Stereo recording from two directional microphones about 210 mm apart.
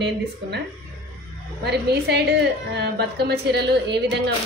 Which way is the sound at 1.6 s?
50° right (ahead or behind).